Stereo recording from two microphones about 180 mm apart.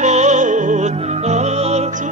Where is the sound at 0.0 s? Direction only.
40° right (ahead or behind).